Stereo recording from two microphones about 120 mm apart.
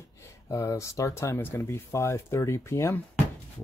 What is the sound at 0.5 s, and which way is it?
Speech, 25° left (ahead or behind).